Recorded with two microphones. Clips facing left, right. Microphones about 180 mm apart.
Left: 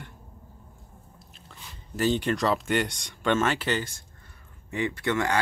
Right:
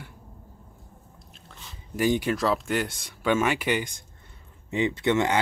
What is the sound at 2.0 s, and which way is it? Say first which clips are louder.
Speech: right 1 dB; 10° right (ahead or behind).